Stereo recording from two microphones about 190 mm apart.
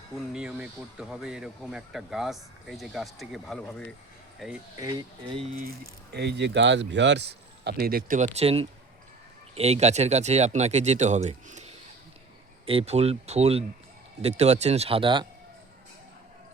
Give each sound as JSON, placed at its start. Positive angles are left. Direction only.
{"t": 0.3, "sound": "speech", "side_deg": -5}
{"t": 4.8, "sound": "speech", "side_deg": -20}
{"t": 5.5, "sound": "speech", "side_deg": -55}